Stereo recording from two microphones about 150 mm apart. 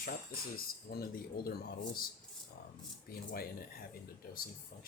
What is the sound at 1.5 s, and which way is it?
Speech, 80° left.